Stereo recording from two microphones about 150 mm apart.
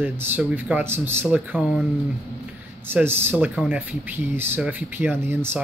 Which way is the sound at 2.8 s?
15° right (ahead or behind).